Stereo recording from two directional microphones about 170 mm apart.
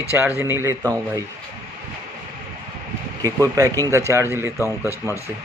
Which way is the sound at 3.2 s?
20° right (ahead or behind).